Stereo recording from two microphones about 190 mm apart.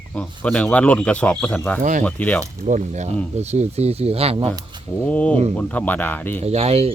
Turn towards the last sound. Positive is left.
turn(degrees=-30)  # may be behind; listen again after turning